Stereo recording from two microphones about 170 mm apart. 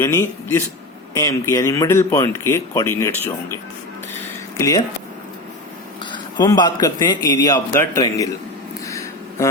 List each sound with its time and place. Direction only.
0.0 s a man's voice: 15° left (ahead or behind)
4.5 s speech: 20° left (ahead or behind)
6.1 s a man's voice: 25° left (ahead or behind)
8.9 s a sound: 20° left (ahead or behind)